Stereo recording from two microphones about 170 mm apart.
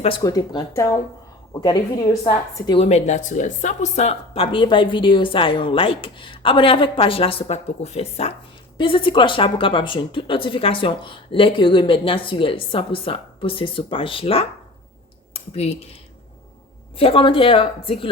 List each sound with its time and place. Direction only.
0.2 s a woman's voice: 20° left (ahead or behind)
2.8 s a woman's voice: 40° left (ahead or behind)
17.0 s a woman's voice: 30° left (ahead or behind)